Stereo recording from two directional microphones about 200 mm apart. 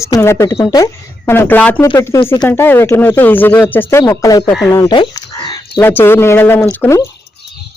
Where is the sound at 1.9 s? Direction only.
20° left (ahead or behind).